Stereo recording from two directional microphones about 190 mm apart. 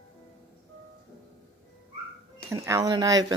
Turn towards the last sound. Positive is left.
turn(degrees=-20)  # may be behind; listen again after turning